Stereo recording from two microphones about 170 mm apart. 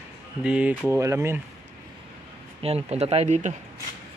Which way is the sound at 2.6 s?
35° right (ahead or behind).